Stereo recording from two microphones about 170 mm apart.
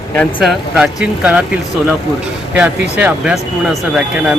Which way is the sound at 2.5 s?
10° right (ahead or behind).